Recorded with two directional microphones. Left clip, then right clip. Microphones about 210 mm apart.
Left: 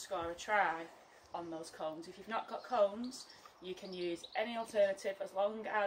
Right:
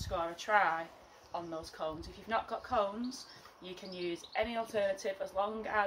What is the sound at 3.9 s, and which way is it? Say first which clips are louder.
Speech: right 3 dB; centre (ahead or behind).